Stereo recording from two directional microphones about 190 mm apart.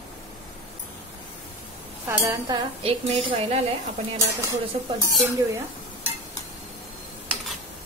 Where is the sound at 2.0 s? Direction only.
20° right (ahead or behind).